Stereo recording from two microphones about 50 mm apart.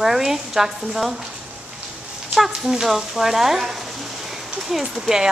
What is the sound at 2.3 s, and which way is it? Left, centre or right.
Speech, centre.